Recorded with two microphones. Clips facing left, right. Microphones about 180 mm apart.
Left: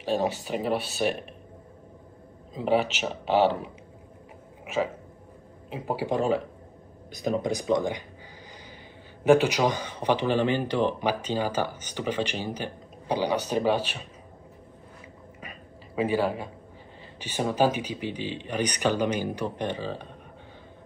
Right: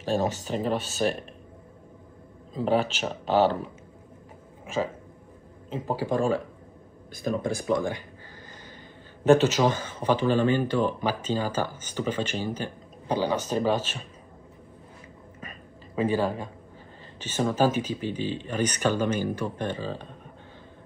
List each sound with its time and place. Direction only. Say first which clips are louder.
0.0 s speech: even; 10° left (ahead or behind)
2.5 s speech: even; 10° left (ahead or behind)
3.3 s speech: even; 45° right (ahead or behind)
5.9 s speech: even; 15° left (ahead or behind)
9.2 s speech: right 1 dB; 10° left (ahead or behind)
15.4 s a sound: right 1 dB; 10° left (ahead or behind)
17.2 s speech: even; 15° left (ahead or behind)